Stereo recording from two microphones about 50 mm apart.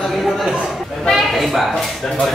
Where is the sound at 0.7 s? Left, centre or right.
Centre.